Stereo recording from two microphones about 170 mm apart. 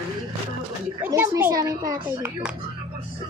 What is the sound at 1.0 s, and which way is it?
A child's voice, 15° right (ahead or behind).